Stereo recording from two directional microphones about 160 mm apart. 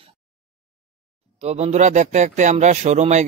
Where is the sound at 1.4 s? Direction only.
45° right (ahead or behind).